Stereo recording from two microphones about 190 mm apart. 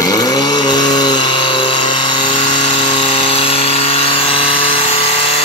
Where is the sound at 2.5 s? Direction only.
25° left (ahead or behind).